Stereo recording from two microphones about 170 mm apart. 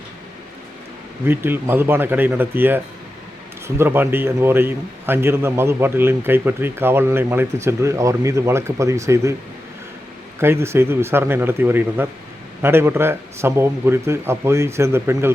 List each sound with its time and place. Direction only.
1.3 s a man's voice: 10° right (ahead or behind)
10.4 s a man's voice: 15° right (ahead or behind)